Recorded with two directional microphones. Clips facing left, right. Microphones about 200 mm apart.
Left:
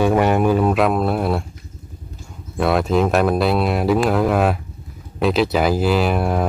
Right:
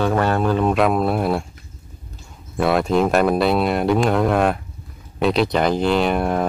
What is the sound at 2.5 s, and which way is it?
Speech, centre (ahead or behind).